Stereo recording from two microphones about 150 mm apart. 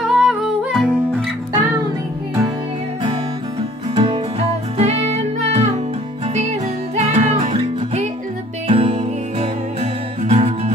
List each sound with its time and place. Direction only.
0.0 s music: 5° right (ahead or behind)
3.9 s music: 40° right (ahead or behind)
7.0 s music: 45° right (ahead or behind)